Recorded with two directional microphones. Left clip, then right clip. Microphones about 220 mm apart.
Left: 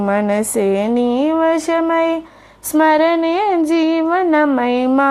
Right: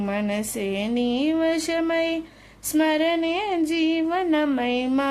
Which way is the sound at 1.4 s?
Centre (ahead or behind).